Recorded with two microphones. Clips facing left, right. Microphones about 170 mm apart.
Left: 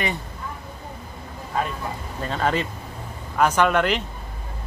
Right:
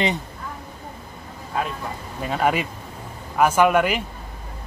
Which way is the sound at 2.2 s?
10° right (ahead or behind).